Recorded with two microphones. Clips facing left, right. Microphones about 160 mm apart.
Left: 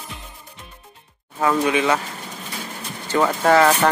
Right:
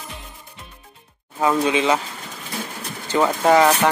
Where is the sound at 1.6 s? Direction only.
20° right (ahead or behind).